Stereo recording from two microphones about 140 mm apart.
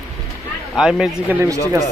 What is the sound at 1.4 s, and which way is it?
Speech, 20° right (ahead or behind).